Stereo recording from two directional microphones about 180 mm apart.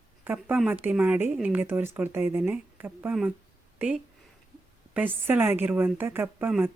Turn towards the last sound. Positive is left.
turn(degrees=-10)  # may be behind; listen again after turning